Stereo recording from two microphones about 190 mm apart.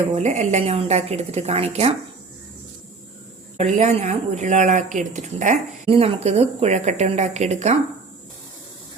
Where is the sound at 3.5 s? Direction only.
35° right (ahead or behind).